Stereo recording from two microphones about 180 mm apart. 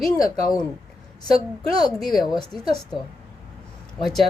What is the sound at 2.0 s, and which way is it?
Speech, centre (ahead or behind).